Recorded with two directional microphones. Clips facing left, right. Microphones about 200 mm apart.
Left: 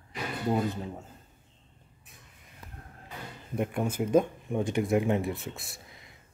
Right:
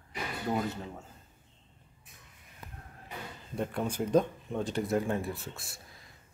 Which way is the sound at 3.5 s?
15° left (ahead or behind).